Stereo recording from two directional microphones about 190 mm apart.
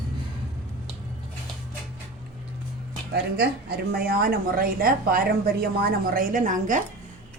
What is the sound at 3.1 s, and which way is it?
A woman's voice, 55° right (ahead or behind).